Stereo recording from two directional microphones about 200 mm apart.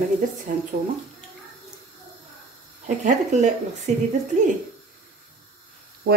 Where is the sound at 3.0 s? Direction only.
35° right (ahead or behind).